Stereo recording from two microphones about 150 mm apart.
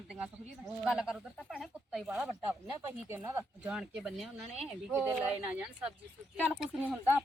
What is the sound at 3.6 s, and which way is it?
Speech, 5° right (ahead or behind).